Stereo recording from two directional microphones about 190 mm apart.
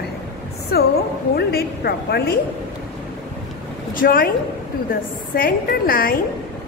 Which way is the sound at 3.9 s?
50° left (ahead or behind).